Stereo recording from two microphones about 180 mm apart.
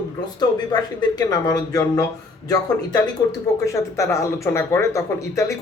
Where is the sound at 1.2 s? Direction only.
20° left (ahead or behind).